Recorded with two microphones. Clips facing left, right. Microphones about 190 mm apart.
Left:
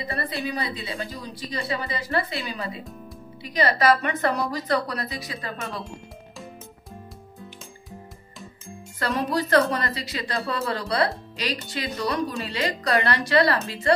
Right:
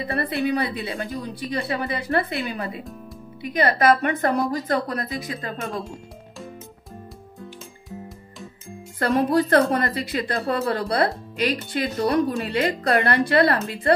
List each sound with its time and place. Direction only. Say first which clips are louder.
0.0 s a woman's voice: right 5 dB; 60° right (ahead or behind)
9.0 s a woman's voice: right 6 dB; 55° right (ahead or behind)